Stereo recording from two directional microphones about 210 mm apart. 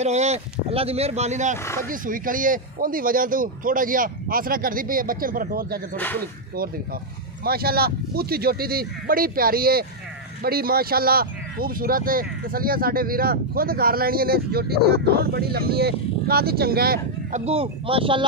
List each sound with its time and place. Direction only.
0.0 s speech: 30° right (ahead or behind)
1.6 s speech: 15° left (ahead or behind)
1.9 s speech: 40° right (ahead or behind)
5.9 s speech: 10° left (ahead or behind)
7.4 s speech: 45° right (ahead or behind)
17.5 s speech: 25° right (ahead or behind)